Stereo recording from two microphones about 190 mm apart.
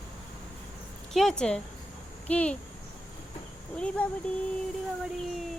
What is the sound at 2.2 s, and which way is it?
Dog, 5° left (ahead or behind).